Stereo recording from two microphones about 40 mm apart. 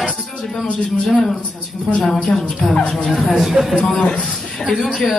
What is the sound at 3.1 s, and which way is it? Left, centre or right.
Speech, centre.